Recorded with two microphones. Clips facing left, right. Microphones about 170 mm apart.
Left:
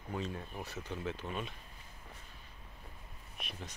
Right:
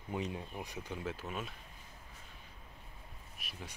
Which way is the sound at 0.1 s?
15° right (ahead or behind).